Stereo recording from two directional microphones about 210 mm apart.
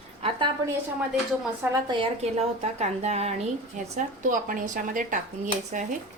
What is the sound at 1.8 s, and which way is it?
Speech, 25° right (ahead or behind).